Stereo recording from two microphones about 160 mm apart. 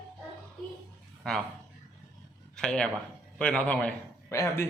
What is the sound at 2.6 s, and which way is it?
A man's voice, 5° left (ahead or behind).